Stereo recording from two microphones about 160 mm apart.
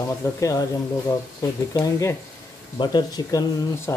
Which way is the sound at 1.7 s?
20° left (ahead or behind).